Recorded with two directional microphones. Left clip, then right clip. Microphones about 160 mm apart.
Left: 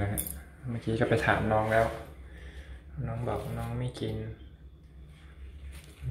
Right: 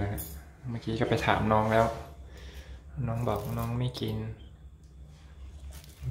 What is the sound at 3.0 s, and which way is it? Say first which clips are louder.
Speech: right 3 dB; 25° right (ahead or behind).